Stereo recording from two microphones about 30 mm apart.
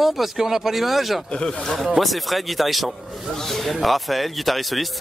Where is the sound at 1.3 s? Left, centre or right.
Left.